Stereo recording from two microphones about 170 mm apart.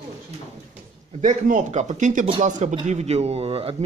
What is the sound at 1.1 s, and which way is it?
A man's voice, 45° right (ahead or behind).